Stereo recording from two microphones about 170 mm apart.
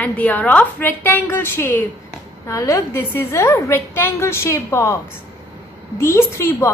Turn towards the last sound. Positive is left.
turn(degrees=15)  # may be behind; listen again after turning